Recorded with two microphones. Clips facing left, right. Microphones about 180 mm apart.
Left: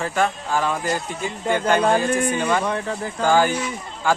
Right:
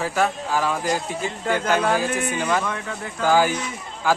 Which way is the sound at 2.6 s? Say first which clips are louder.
Left 4 dB; 35° left (ahead or behind).